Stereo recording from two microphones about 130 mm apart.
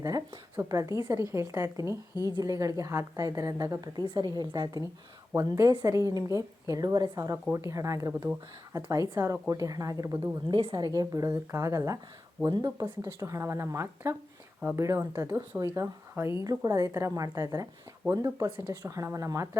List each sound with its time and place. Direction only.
0.0 s a woman's voice: 25° right (ahead or behind)
2.1 s a woman's voice: 30° left (ahead or behind)
2.4 s a woman's voice: 25° right (ahead or behind)
10.5 s a woman's voice: 35° right (ahead or behind)